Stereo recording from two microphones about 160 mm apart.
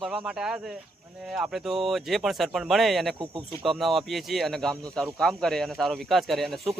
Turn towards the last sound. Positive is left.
turn(degrees=0)  # may be behind; listen again after turning